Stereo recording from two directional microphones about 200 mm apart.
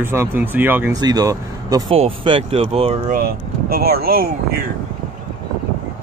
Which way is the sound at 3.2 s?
50° right (ahead or behind).